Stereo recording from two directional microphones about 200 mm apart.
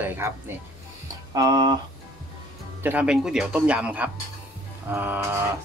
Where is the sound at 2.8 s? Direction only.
5° right (ahead or behind).